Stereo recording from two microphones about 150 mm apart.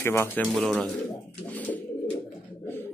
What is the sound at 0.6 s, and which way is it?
Speech, centre (ahead or behind).